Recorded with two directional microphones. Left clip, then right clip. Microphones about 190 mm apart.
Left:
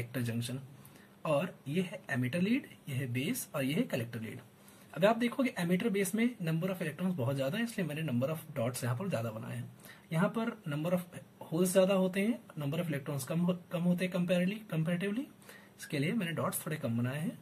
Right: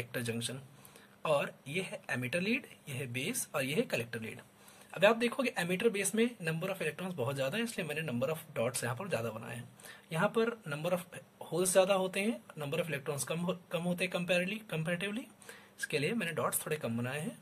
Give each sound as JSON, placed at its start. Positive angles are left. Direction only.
{"t": 0.1, "sound": "speech", "side_deg": -40}